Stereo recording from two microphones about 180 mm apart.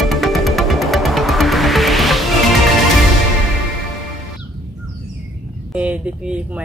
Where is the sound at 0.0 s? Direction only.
Centre (ahead or behind).